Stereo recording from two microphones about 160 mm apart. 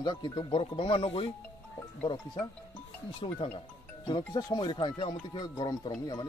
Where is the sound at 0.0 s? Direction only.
30° left (ahead or behind).